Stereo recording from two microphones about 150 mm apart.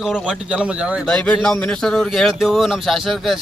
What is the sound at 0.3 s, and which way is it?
Speech, 5° right (ahead or behind).